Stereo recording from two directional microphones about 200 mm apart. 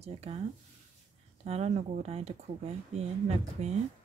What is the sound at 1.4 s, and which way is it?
Speech, 35° right (ahead or behind).